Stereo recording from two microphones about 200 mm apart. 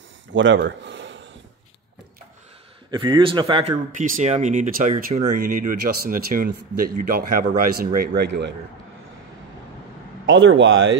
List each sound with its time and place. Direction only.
0.3 s speech: 70° right (ahead or behind)
2.9 s speech: 25° right (ahead or behind)
4.0 s speech: 40° right (ahead or behind); by 8.5 s 60° right (ahead or behind)
10.2 s a man's voice: 70° right (ahead or behind)